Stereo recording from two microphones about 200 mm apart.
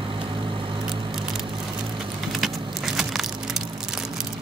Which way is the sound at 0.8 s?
Centre (ahead or behind).